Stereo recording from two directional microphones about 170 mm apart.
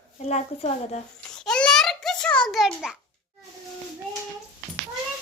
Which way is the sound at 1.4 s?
5° left (ahead or behind).